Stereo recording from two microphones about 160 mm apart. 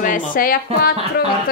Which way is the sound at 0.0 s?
55° left (ahead or behind).